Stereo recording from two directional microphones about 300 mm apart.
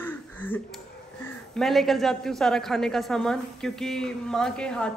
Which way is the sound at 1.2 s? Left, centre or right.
Centre.